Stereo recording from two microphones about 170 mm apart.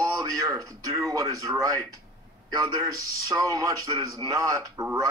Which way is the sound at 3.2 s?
20° right (ahead or behind).